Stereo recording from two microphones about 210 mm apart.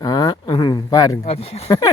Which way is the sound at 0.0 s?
20° left (ahead or behind).